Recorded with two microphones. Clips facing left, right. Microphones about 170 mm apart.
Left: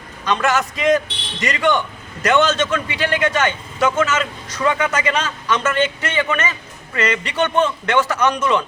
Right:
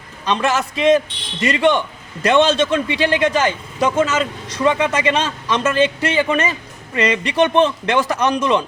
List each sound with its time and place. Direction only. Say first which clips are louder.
0.3 s a man's voice: even; 30° right (ahead or behind)